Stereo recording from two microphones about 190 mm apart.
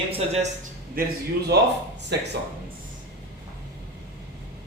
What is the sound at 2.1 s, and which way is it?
Speech, 60° right (ahead or behind).